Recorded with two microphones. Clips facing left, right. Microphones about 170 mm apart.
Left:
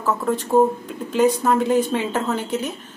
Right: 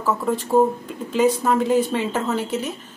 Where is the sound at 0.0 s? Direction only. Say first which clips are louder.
Even; centre (ahead or behind).